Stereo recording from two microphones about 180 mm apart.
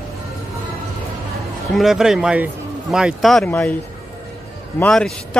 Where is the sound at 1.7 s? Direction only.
Centre (ahead or behind).